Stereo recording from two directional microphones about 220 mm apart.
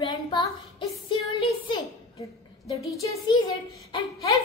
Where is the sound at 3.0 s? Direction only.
20° left (ahead or behind).